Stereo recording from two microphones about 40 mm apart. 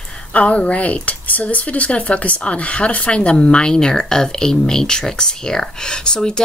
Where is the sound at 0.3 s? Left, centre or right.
Left.